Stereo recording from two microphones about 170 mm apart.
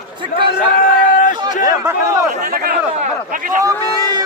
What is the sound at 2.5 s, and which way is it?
Speech, 60° right (ahead or behind).